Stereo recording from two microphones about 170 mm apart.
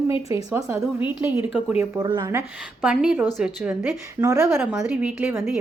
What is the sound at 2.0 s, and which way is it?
Speech, 25° right (ahead or behind).